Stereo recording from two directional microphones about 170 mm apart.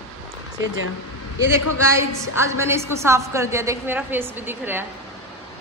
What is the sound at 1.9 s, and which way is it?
A woman's voice, 15° right (ahead or behind).